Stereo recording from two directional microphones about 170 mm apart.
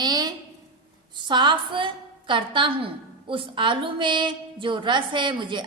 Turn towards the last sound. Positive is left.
turn(degrees=-30)  # may be behind; listen again after turning